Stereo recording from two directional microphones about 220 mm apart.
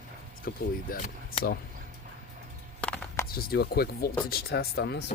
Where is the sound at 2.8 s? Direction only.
5° left (ahead or behind).